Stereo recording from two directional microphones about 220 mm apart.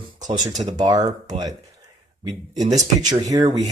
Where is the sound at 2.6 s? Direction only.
35° right (ahead or behind).